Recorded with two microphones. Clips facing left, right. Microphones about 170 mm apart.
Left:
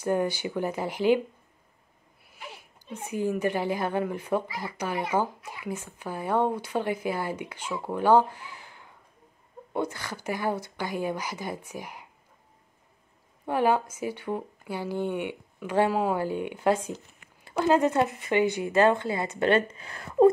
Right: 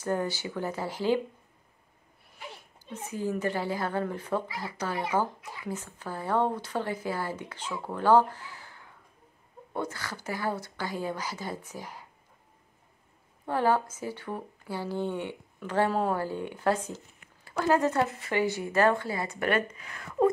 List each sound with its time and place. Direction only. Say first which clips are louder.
0.0 s a woman's voice: left 4 dB; 15° left (ahead or behind)
2.5 s a woman's voice: left 1 dB; 15° left (ahead or behind)
5.0 s a woman's voice: left 1 dB; 5° left (ahead or behind)
13.5 s a woman's voice: left 2 dB; 15° left (ahead or behind)
15.9 s speech: left 2 dB; 5° left (ahead or behind)
16.2 s a woman's voice: left 3 dB; 15° left (ahead or behind)